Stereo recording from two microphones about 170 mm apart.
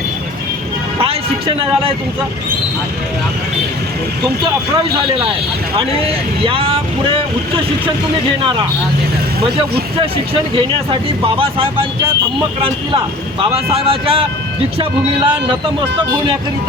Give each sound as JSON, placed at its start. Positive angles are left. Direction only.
{"t": 1.0, "sound": "a sound", "side_deg": -30}
{"t": 6.4, "sound": "speech", "side_deg": -30}
{"t": 10.5, "sound": "speech", "side_deg": -30}
{"t": 13.4, "sound": "speech", "side_deg": -35}